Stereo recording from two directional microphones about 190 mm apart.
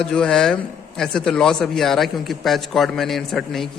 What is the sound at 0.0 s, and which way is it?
Speech, 5° left (ahead or behind).